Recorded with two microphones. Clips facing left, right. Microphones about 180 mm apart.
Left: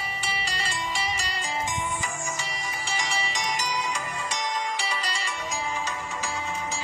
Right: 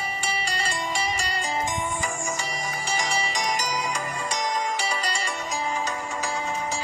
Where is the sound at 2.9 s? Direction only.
45° right (ahead or behind).